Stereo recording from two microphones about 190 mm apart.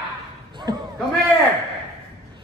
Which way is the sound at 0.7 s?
20° right (ahead or behind).